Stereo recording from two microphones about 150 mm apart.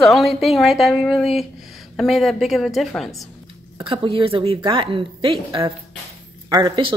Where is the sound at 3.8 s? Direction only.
35° right (ahead or behind).